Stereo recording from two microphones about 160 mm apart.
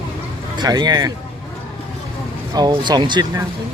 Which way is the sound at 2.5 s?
25° right (ahead or behind).